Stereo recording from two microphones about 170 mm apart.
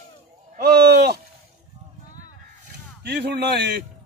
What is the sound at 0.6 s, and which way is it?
Speech, 70° right (ahead or behind).